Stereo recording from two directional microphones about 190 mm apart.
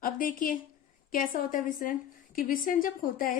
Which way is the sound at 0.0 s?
45° left (ahead or behind).